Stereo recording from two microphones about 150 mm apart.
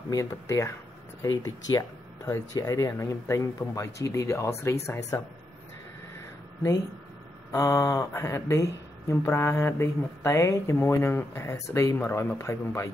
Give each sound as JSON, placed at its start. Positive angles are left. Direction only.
{"t": 0.1, "sound": "speech", "side_deg": 20}
{"t": 7.5, "sound": "speech", "side_deg": 20}